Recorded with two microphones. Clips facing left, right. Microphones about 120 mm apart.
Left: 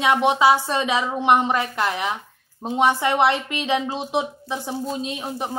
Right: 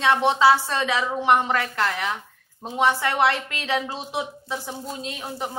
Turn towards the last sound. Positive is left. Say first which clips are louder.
# left 3 dB
turn(degrees=20)  # may be behind; listen again after turning